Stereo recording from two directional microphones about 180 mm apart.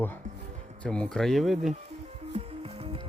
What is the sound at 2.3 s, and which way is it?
Music, 35° right (ahead or behind).